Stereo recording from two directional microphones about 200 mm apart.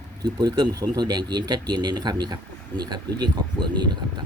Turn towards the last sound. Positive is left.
turn(degrees=-20)  # may be behind; listen again after turning